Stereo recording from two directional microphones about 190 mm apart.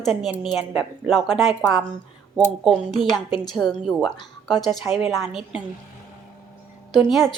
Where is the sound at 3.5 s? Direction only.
Centre (ahead or behind).